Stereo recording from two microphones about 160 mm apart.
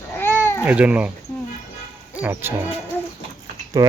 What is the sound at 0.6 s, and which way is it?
Speech, 5° right (ahead or behind).